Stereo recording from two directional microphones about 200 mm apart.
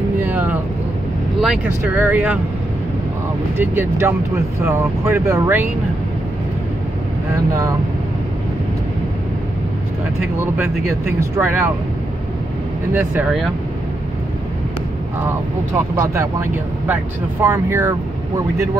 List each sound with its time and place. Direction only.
0.2 s vehicle: 10° right (ahead or behind)
1.4 s speech: 5° right (ahead or behind)
3.5 s speech: 10° right (ahead or behind)
11.1 s speech: 15° right (ahead or behind)
12.9 s speech: 10° right (ahead or behind)
15.7 s speech: 15° right (ahead or behind)